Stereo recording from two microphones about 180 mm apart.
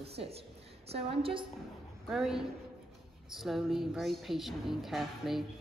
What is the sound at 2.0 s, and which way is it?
A woman's voice, centre (ahead or behind).